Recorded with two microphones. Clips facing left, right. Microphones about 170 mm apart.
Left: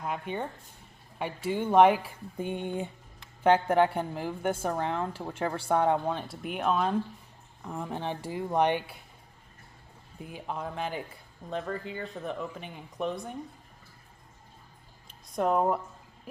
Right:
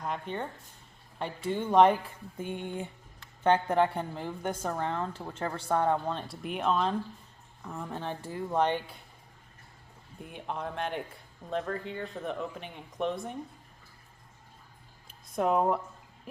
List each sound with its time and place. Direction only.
0.0 s a woman's voice: 10° left (ahead or behind)
2.4 s speech: 20° left (ahead or behind)
3.4 s a woman's voice: 5° left (ahead or behind)
6.2 s a woman's voice: centre (ahead or behind)
10.2 s speech: centre (ahead or behind)
15.4 s speech: centre (ahead or behind)